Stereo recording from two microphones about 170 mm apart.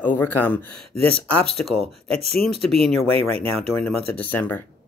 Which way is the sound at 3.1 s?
35° right (ahead or behind).